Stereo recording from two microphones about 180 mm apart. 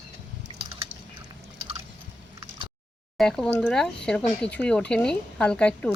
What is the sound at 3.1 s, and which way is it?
Speech, 5° left (ahead or behind).